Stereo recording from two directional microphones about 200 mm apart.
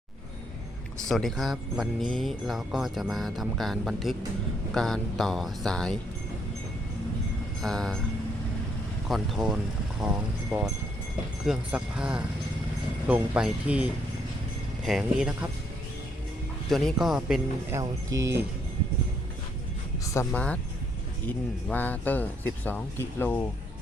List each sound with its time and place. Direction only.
1.0 s speech: centre (ahead or behind)
7.6 s speech: centre (ahead or behind)
9.0 s speech: centre (ahead or behind)
14.8 s speech: centre (ahead or behind)
16.6 s speech: centre (ahead or behind)
17.7 s speech: 15° right (ahead or behind)
20.1 s speech: 5° left (ahead or behind)